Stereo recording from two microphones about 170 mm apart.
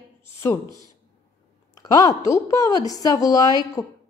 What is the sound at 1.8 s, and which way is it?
A woman's voice, 20° left (ahead or behind).